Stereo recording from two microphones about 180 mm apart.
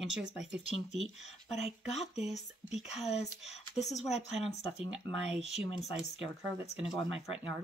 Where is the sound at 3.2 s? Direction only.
35° left (ahead or behind).